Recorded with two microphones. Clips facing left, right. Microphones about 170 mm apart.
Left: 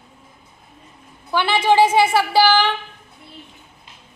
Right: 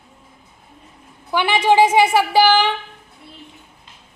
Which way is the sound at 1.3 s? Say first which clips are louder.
Right 1 dB; 15° right (ahead or behind).